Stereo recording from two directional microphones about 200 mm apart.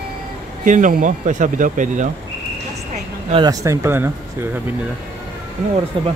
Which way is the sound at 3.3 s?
20° right (ahead or behind).